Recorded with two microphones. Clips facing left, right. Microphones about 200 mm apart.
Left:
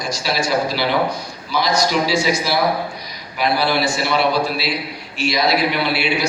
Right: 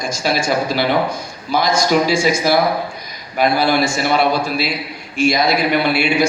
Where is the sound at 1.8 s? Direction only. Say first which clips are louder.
Right 3 dB; 50° right (ahead or behind).